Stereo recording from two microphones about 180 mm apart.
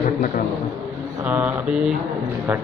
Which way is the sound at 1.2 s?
10° right (ahead or behind).